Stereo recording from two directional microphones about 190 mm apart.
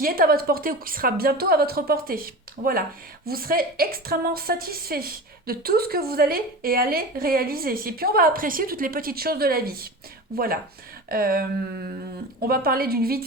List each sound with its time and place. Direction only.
0.0 s a woman's voice: 50° right (ahead or behind)